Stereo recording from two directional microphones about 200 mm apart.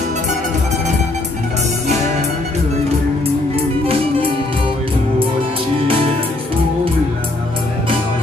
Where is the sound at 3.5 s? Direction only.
30° right (ahead or behind).